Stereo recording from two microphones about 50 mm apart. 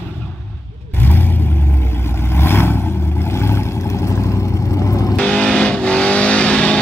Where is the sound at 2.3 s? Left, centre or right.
Left.